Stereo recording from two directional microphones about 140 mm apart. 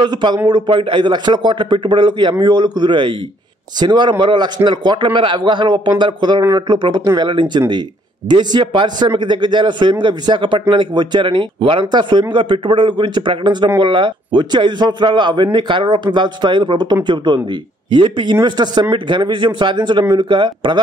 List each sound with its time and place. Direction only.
0.0 s a man's voice: 30° right (ahead or behind)